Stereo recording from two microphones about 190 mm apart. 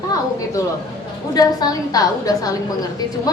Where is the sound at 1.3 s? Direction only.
20° left (ahead or behind).